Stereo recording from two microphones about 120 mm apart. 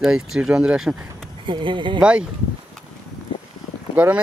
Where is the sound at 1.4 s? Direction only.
45° right (ahead or behind).